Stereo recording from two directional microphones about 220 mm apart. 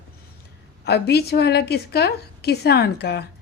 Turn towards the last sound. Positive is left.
turn(degrees=50)  # may be behind; listen again after turning